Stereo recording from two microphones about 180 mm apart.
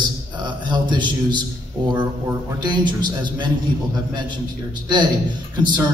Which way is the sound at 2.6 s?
25° right (ahead or behind).